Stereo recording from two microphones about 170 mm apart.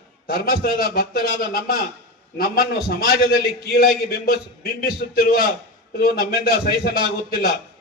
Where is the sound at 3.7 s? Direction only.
60° left (ahead or behind).